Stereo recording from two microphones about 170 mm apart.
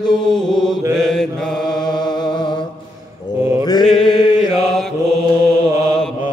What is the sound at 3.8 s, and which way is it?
Mantra, centre (ahead or behind).